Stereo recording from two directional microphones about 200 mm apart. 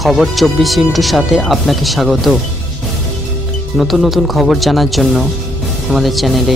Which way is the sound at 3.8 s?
Centre (ahead or behind).